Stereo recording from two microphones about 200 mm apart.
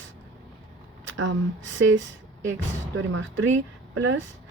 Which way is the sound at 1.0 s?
75° right (ahead or behind).